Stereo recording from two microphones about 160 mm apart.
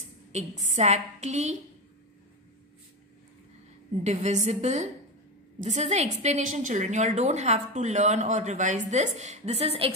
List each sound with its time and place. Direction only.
0.3 s a woman's voice: 45° right (ahead or behind)
4.0 s a woman's voice: 45° right (ahead or behind)